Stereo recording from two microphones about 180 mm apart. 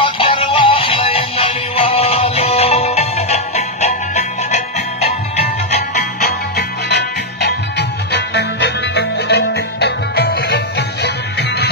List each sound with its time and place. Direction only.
0.2 s music: 30° left (ahead or behind)
6.2 s music: 65° left (ahead or behind)